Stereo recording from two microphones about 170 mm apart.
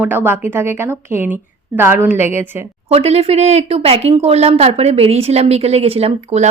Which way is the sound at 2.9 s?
35° right (ahead or behind).